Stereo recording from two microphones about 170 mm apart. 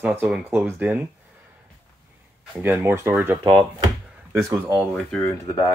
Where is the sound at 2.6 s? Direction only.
10° right (ahead or behind).